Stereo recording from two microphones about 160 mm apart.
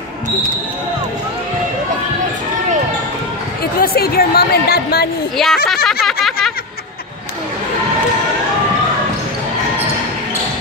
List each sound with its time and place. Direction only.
3.8 s speech: 75° left (ahead or behind)
5.4 s speech: centre (ahead or behind)